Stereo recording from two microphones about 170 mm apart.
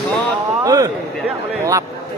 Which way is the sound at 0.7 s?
20° right (ahead or behind).